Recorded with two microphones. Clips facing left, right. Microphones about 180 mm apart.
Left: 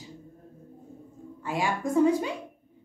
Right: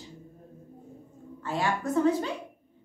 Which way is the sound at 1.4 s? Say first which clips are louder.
Even; 10° left (ahead or behind).